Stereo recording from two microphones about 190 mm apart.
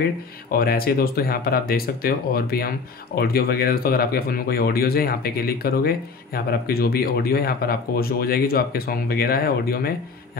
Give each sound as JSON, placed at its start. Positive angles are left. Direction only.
{"t": 0.0, "sound": "speech", "side_deg": 50}